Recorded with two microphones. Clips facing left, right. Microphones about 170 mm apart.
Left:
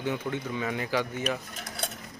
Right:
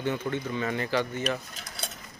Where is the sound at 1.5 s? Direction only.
55° left (ahead or behind).